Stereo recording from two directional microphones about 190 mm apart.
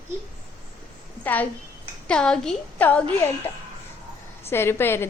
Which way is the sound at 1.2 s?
10° left (ahead or behind).